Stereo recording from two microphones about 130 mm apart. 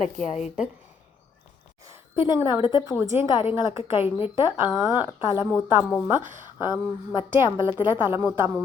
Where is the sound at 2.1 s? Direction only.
45° left (ahead or behind).